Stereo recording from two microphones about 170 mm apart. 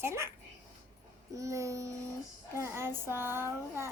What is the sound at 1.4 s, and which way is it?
Child singing, 20° right (ahead or behind).